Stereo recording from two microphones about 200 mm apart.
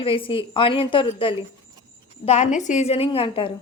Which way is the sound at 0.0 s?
25° left (ahead or behind).